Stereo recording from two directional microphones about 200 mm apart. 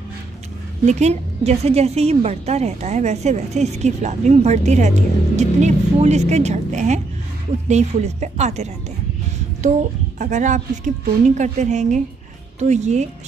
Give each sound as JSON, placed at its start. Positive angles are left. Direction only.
{"t": 0.8, "sound": "a woman's voice", "side_deg": -35}